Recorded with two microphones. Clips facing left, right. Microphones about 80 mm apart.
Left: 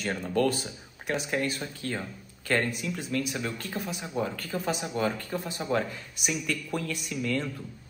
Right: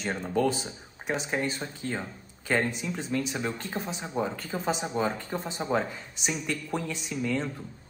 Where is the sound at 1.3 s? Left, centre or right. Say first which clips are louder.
Even; right.